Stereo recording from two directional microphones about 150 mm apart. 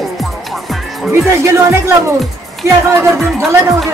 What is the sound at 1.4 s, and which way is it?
Speech, 20° right (ahead or behind).